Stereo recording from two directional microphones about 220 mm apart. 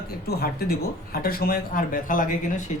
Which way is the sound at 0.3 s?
45° left (ahead or behind).